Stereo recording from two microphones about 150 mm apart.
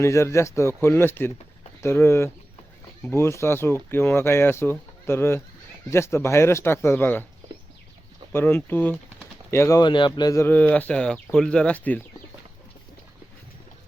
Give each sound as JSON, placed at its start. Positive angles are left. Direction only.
{"t": 0.0, "sound": "speech", "side_deg": 20}
{"t": 8.3, "sound": "speech", "side_deg": 15}
{"t": 10.4, "sound": "speech", "side_deg": 10}